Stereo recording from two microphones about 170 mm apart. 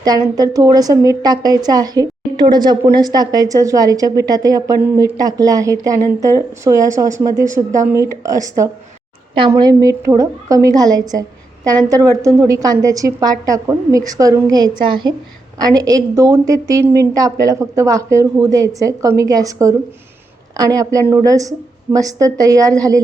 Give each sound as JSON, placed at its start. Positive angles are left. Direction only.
{"t": 0.0, "sound": "a woman's voice", "side_deg": -20}